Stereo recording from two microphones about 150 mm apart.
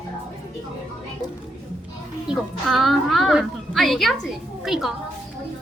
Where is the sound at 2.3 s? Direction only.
Centre (ahead or behind).